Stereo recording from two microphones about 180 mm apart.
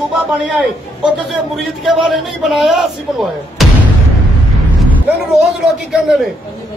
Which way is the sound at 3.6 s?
Centre (ahead or behind).